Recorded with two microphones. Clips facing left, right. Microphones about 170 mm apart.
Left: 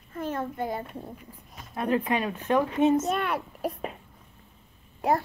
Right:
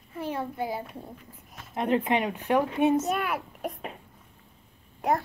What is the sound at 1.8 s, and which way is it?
A woman's voice, 20° right (ahead or behind).